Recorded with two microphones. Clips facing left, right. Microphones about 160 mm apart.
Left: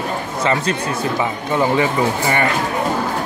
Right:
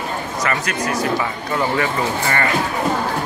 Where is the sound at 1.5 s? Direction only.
15° left (ahead or behind).